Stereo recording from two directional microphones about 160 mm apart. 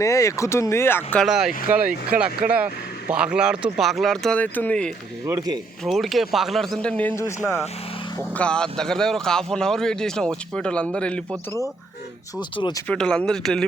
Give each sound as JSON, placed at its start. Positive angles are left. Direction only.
{"t": 0.0, "sound": "speech", "side_deg": 20}
{"t": 1.2, "sound": "speech", "side_deg": -5}
{"t": 5.2, "sound": "speech", "side_deg": -20}
{"t": 5.8, "sound": "speech", "side_deg": 0}
{"t": 12.4, "sound": "speech", "side_deg": 30}
{"t": 12.9, "sound": "speech", "side_deg": 5}